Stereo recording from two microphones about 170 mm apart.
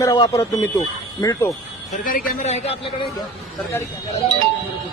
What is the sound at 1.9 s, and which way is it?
Speech, 55° left (ahead or behind).